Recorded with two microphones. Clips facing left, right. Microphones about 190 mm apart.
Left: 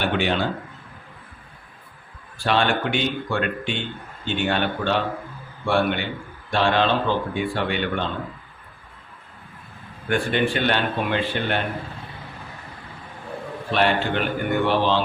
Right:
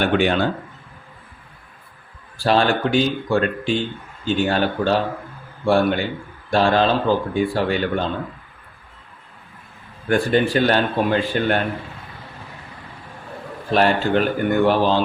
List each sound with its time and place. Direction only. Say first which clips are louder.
0.0 s speech: right 5 dB; 45° right (ahead or behind)
2.4 s a man's voice: right 4 dB; 40° right (ahead or behind)
10.1 s a man's voice: right 4 dB; 40° right (ahead or behind)
13.7 s a man's voice: right 4 dB; 40° right (ahead or behind)